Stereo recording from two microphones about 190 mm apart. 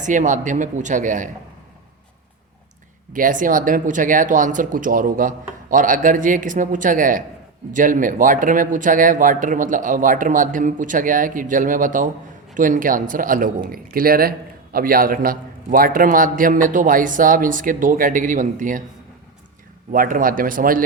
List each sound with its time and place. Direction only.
0.0 s speech: 40° right (ahead or behind)
3.1 s speech: 45° right (ahead or behind)
19.9 s speech: 45° right (ahead or behind)